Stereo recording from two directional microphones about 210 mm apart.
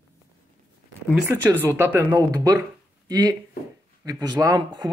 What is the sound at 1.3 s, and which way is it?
Speech, 15° right (ahead or behind).